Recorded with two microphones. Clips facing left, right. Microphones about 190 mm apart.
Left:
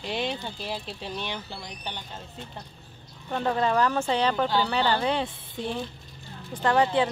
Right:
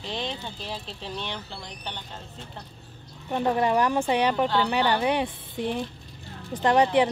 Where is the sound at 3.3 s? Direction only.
15° right (ahead or behind).